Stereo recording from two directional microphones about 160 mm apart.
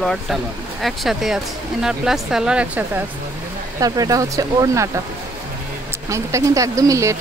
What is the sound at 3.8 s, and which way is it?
Speech, 25° right (ahead or behind).